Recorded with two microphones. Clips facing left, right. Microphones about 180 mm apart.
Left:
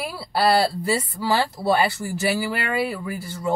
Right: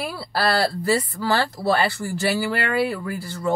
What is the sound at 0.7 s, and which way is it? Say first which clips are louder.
A woman's voice: right 2 dB; 10° left (ahead or behind).